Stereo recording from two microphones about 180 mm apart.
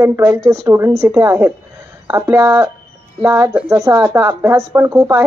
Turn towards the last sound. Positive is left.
turn(degrees=-10)  # may be behind; listen again after turning